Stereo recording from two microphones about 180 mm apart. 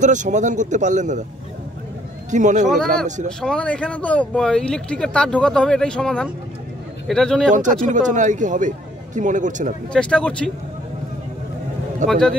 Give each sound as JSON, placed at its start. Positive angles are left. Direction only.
{"t": 0.0, "sound": "a man's voice", "side_deg": -45}
{"t": 2.3, "sound": "a man's voice", "side_deg": -40}
{"t": 3.3, "sound": "speech", "side_deg": 5}
{"t": 7.8, "sound": "a man's voice", "side_deg": -45}
{"t": 9.9, "sound": "speech", "side_deg": 5}
{"t": 12.1, "sound": "speech", "side_deg": 5}